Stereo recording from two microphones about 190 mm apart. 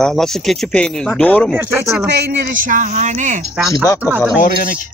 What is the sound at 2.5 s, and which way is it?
Speech, 45° right (ahead or behind).